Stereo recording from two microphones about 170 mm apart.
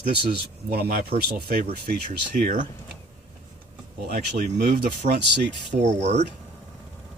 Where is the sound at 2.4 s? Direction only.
50° right (ahead or behind).